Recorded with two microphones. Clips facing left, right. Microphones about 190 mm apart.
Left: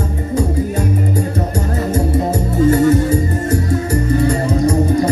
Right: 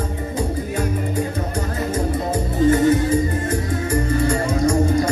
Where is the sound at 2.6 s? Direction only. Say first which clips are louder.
Left 3 dB; 40° left (ahead or behind).